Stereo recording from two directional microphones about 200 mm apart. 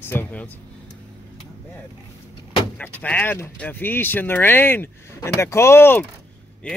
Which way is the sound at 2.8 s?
5° left (ahead or behind).